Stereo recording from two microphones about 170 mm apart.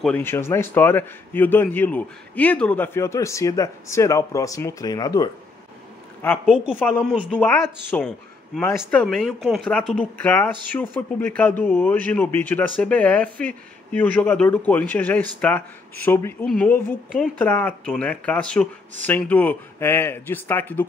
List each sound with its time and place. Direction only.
0.0 s a man's voice: 10° left (ahead or behind)
6.4 s a man's voice: 5° right (ahead or behind); by 20.8 s 10° left (ahead or behind)